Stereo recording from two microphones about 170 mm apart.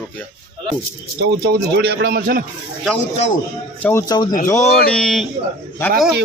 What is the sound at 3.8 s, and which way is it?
Speech, 5° left (ahead or behind).